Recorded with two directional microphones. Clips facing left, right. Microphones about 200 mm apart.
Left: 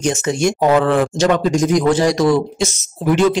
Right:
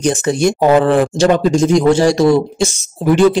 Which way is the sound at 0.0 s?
35° right (ahead or behind).